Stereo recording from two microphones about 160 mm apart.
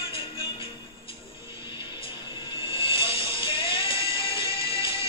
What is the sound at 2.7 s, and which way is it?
Music, 35° left (ahead or behind).